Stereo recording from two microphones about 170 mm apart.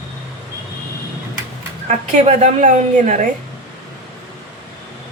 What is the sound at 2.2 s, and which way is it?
Speech, 45° right (ahead or behind).